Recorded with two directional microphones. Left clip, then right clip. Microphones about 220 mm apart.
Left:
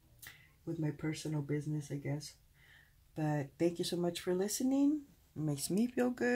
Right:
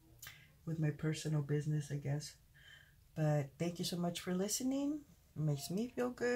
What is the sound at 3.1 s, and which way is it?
Speech, 30° left (ahead or behind).